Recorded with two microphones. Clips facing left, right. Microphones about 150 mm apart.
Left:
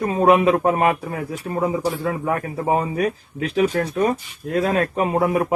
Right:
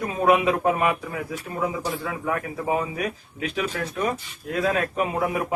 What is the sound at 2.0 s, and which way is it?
Speech, 35° left (ahead or behind).